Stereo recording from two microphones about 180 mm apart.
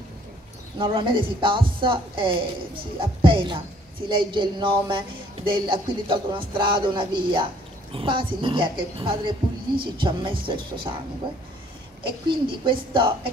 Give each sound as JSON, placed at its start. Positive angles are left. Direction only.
{"t": 0.7, "sound": "speech", "side_deg": -30}
{"t": 12.0, "sound": "speech", "side_deg": -25}